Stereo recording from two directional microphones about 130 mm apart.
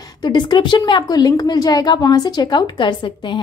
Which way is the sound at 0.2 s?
35° left (ahead or behind).